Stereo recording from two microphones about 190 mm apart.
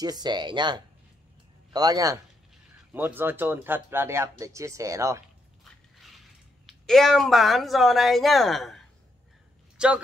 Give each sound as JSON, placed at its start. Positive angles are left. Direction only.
{"t": 0.0, "sound": "speech", "side_deg": -20}
{"t": 5.6, "sound": "a sound", "side_deg": 0}
{"t": 9.8, "sound": "speech", "side_deg": -5}